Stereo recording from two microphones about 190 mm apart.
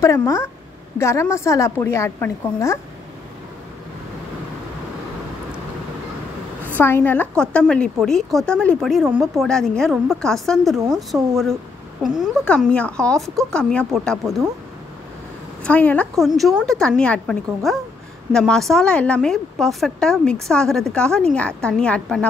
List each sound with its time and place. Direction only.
0.0 s a woman's voice: 15° left (ahead or behind)
6.8 s a woman's voice: 10° left (ahead or behind)
12.2 s a woman's voice: 5° left (ahead or behind)
15.6 s a woman's voice: 5° left (ahead or behind)